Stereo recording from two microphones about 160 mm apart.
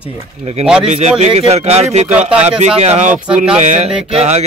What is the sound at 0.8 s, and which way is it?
Speech, 45° right (ahead or behind).